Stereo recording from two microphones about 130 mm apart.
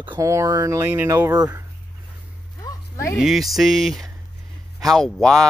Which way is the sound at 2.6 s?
30° left (ahead or behind).